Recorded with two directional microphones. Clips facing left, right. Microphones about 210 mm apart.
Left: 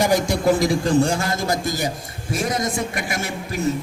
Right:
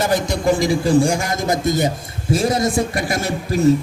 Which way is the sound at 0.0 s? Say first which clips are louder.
Even; 10° left (ahead or behind).